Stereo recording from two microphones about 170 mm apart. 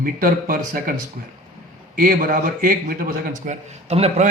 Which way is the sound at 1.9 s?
55° right (ahead or behind).